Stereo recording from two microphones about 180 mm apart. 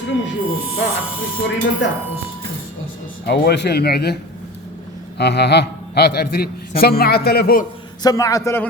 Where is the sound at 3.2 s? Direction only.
65° left (ahead or behind).